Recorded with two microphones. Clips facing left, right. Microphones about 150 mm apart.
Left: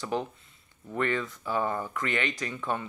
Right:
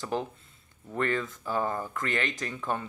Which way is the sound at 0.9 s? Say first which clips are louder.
Even; 40° right (ahead or behind).